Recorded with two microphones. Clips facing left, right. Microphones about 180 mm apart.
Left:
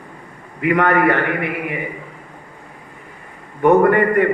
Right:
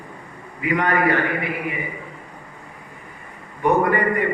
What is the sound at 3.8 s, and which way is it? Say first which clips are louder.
Speech: left 6 dB; 55° left (ahead or behind).